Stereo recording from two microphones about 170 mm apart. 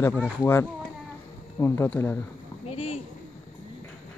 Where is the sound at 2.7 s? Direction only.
35° left (ahead or behind).